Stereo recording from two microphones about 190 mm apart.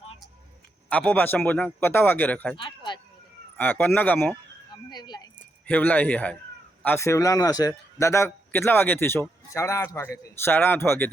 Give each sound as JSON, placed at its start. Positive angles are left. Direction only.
{"t": 0.9, "sound": "a man's voice", "side_deg": 10}
{"t": 2.6, "sound": "a sound", "side_deg": 25}
{"t": 3.6, "sound": "a man's voice", "side_deg": 10}
{"t": 4.9, "sound": "speech", "side_deg": 20}
{"t": 5.6, "sound": "a man's voice", "side_deg": 10}